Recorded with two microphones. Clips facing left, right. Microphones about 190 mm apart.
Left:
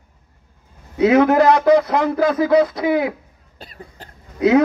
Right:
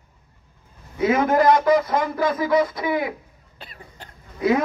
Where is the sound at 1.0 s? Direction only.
70° left (ahead or behind).